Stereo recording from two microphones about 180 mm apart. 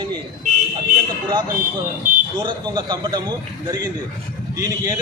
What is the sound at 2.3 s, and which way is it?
Speech, 25° right (ahead or behind).